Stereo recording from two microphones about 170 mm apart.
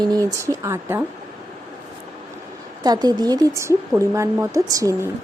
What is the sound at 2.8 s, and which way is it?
Speech, 25° right (ahead or behind).